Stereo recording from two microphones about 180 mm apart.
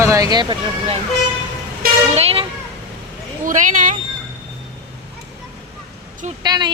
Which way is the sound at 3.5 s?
45° right (ahead or behind).